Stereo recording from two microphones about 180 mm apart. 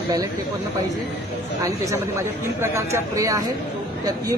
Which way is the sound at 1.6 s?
15° right (ahead or behind).